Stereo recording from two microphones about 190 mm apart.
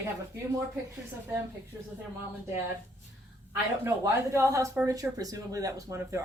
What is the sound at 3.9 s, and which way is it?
Speech, 15° right (ahead or behind).